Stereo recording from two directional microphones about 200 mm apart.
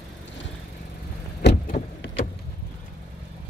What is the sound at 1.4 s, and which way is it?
Vehicle, 55° left (ahead or behind).